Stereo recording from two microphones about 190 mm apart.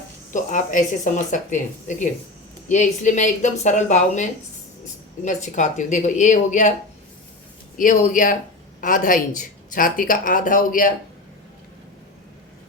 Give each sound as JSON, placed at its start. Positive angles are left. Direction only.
{"t": 0.3, "sound": "speech", "side_deg": 45}
{"t": 7.8, "sound": "speech", "side_deg": 45}